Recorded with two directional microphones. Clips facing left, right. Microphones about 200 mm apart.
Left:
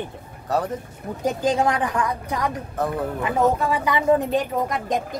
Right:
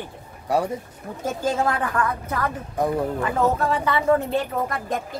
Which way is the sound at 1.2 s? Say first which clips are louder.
Left 3 dB; 15° left (ahead or behind).